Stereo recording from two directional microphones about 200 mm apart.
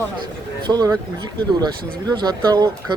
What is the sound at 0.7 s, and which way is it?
Speech, 20° right (ahead or behind).